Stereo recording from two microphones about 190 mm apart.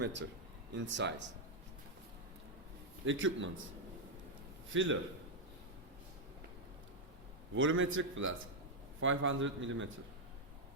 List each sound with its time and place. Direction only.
0.0 s speech: 70° right (ahead or behind)
3.1 s a man's voice: 85° right
4.7 s a man's voice: 80° right
7.5 s a man's voice: 90° right